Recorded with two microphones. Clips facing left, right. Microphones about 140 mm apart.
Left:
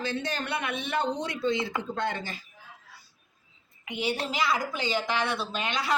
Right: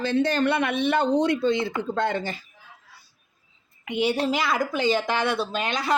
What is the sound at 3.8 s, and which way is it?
Speech, 60° right (ahead or behind).